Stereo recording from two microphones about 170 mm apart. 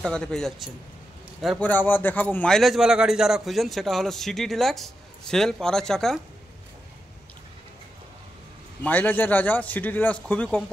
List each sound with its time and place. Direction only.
0.0 s a man's voice: 5° left (ahead or behind)
8.8 s a man's voice: 10° left (ahead or behind)